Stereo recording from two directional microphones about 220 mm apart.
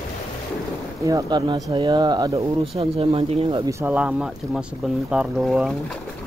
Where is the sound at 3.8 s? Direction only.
5° right (ahead or behind).